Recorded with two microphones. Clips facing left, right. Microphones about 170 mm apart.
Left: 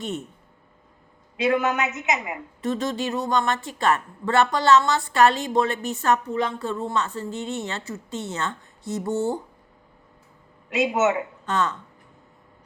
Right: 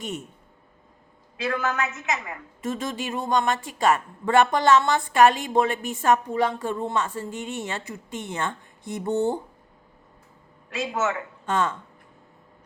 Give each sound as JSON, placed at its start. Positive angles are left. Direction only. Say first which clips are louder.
{"t": 0.0, "sound": "a woman's voice", "louder": "left 3 dB", "side_deg": -10}
{"t": 1.4, "sound": "a woman's voice", "louder": "left 5 dB", "side_deg": 20}
{"t": 2.6, "sound": "a woman's voice", "louder": "left 3 dB", "side_deg": -10}
{"t": 10.7, "sound": "a woman's voice", "louder": "left 5 dB", "side_deg": 20}